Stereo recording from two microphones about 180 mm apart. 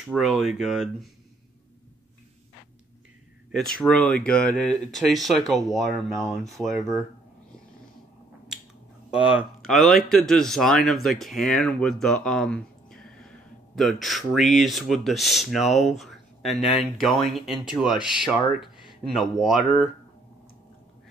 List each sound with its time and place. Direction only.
0.1 s speech: centre (ahead or behind)
3.5 s speech: 5° left (ahead or behind)
6.7 s speech: 20° right (ahead or behind)
9.1 s speech: 5° right (ahead or behind)